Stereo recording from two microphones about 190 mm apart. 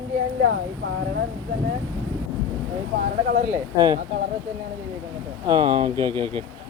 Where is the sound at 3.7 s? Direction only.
20° right (ahead or behind).